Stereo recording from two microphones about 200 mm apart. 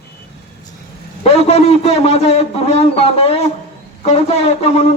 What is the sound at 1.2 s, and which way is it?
A man's voice, 30° left (ahead or behind).